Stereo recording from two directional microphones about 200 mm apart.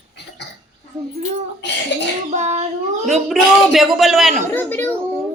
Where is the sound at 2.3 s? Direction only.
35° right (ahead or behind).